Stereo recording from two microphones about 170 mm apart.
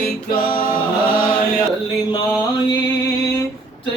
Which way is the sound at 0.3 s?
60° left (ahead or behind).